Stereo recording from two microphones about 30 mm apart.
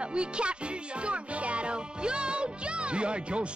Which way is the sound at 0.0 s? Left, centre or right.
Right.